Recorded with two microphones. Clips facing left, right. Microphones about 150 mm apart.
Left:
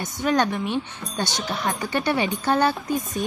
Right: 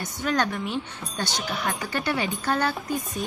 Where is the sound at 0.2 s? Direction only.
20° left (ahead or behind).